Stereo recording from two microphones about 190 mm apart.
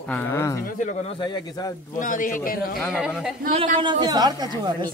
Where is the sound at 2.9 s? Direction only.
5° right (ahead or behind).